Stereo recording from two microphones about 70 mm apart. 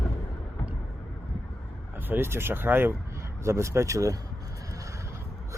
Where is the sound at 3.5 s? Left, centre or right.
Right.